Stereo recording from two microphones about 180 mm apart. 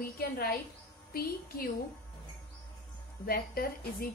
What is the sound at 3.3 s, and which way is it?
Speech, 55° left (ahead or behind).